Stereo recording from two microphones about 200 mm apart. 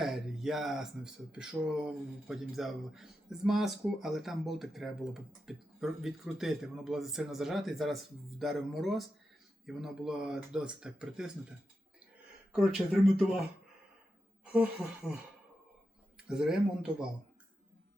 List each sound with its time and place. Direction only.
0.0 s speech: centre (ahead or behind)
12.7 s speech: centre (ahead or behind)
14.4 s speech: 5° right (ahead or behind)
16.1 s speech: 5° right (ahead or behind)